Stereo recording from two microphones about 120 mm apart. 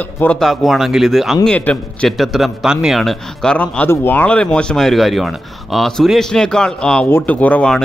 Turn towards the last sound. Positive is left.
turn(degrees=10)  # may be behind; listen again after turning